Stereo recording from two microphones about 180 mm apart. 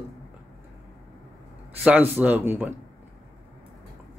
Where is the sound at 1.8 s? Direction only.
10° right (ahead or behind).